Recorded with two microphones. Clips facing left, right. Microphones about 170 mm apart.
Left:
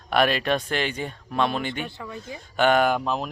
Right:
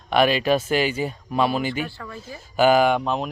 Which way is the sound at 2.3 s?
5° right (ahead or behind).